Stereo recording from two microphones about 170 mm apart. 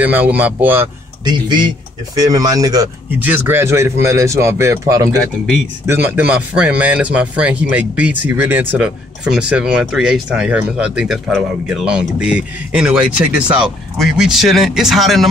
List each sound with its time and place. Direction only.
0.0 s a man's voice: 10° right (ahead or behind)
1.2 s speech: 25° right (ahead or behind)
3.2 s a man's voice: 10° right (ahead or behind)